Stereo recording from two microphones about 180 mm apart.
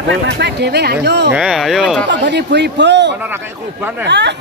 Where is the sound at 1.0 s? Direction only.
70° right (ahead or behind).